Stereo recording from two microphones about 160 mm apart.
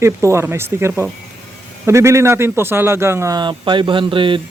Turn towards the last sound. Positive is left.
turn(degrees=-30)  # may be behind; listen again after turning